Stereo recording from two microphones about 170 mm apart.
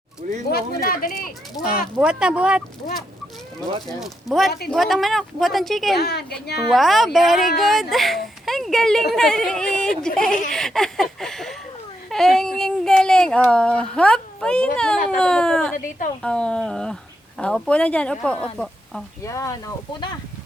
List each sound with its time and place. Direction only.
0.5 s speech: 60° left (ahead or behind)
1.6 s speech: 20° left (ahead or behind)
2.0 s speech: 5° right (ahead or behind)
3.8 s speech: centre (ahead or behind)
6.0 s a woman's voice: 70° left (ahead or behind)
6.7 s speech: centre (ahead or behind)
15.8 s a woman's voice: 50° left (ahead or behind)
16.2 s speech: 5° left (ahead or behind)
19.2 s speech: 15° left (ahead or behind)